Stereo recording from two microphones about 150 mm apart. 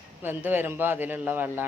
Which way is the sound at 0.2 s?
15° right (ahead or behind).